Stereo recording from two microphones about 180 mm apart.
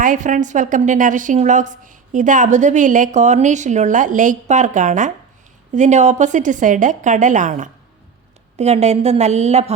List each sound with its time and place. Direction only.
0.0 s a woman's voice: 45° right (ahead or behind)